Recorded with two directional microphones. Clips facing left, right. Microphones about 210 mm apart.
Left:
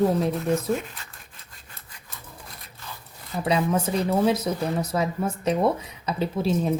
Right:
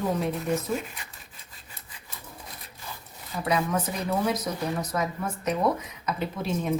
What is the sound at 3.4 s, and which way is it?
Speech, 30° left (ahead or behind).